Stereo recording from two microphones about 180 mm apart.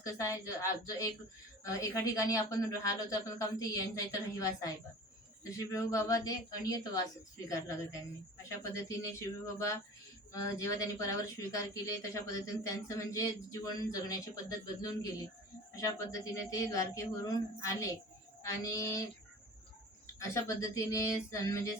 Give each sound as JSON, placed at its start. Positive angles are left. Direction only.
{"t": 0.0, "sound": "speech", "side_deg": 15}
{"t": 20.1, "sound": "speech", "side_deg": 15}